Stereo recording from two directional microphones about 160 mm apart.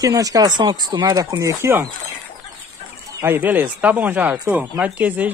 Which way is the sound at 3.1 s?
15° right (ahead or behind).